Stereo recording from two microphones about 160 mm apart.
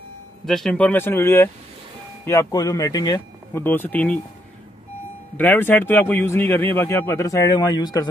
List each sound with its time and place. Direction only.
0.5 s speech: centre (ahead or behind)
5.4 s speech: 10° left (ahead or behind)